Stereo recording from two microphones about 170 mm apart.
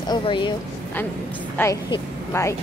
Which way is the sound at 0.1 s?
30° left (ahead or behind).